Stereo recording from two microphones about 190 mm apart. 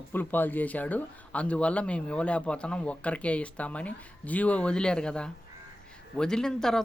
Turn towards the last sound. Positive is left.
turn(degrees=5)  # may be behind; listen again after turning